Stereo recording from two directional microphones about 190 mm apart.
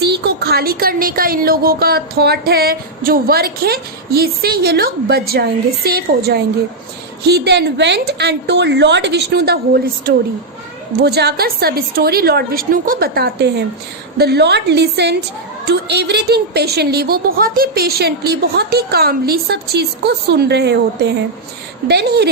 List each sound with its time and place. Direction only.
0.0 s a woman's voice: 60° right (ahead or behind)